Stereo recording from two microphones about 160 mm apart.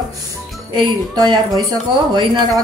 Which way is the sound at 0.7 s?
25° right (ahead or behind).